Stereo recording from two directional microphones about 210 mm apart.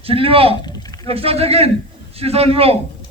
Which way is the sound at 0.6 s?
20° left (ahead or behind).